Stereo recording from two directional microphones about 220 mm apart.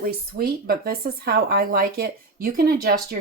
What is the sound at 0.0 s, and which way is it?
Speech, 45° right (ahead or behind).